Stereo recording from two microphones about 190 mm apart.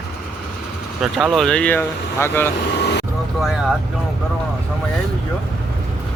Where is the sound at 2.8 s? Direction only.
60° left (ahead or behind).